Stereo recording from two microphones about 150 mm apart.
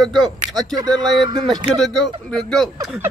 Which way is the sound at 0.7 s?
30° right (ahead or behind).